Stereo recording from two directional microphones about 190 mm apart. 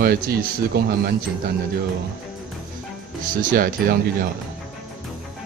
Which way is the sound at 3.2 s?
45° right (ahead or behind).